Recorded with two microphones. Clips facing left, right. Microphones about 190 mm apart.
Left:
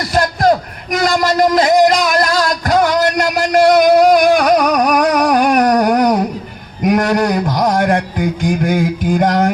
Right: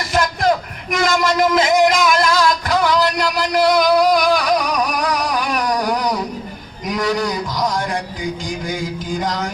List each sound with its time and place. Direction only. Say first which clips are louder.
0.1 s a sound: left 4 dB; 40° left (ahead or behind)
0.9 s music: left 3 dB; 35° left (ahead or behind); by 6.2 s 55° left (ahead or behind)
6.8 s a man's voice: left 7 dB; 60° left (ahead or behind)